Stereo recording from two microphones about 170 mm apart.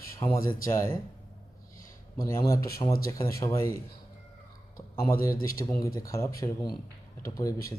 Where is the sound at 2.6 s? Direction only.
60° left (ahead or behind).